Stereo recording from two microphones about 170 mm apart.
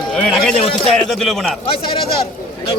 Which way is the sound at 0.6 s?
35° left (ahead or behind).